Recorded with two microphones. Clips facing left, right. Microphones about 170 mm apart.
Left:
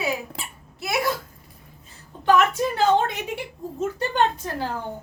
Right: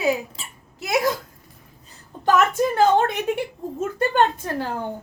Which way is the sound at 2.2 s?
50° right (ahead or behind).